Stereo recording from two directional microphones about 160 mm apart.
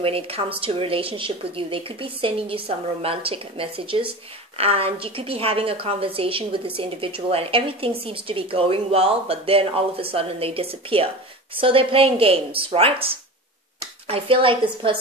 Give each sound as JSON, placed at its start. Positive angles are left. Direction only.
{"t": 0.0, "sound": "a woman's voice", "side_deg": -35}